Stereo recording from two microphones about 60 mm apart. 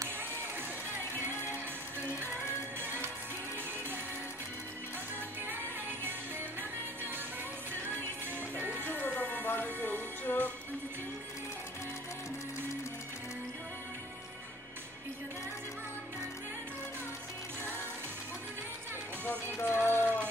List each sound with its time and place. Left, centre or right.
2.0 s music: right
8.8 s music: left
19.5 s music: left